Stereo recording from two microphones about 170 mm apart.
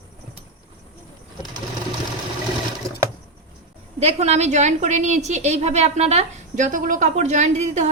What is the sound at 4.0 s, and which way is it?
A woman's voice, 40° right (ahead or behind).